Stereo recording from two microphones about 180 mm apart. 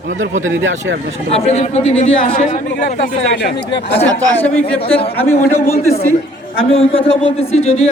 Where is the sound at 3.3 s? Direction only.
65° left (ahead or behind).